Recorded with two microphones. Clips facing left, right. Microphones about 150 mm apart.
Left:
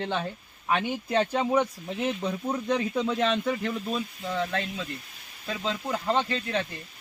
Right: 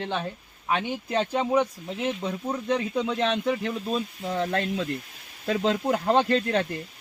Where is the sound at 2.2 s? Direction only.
5° right (ahead or behind).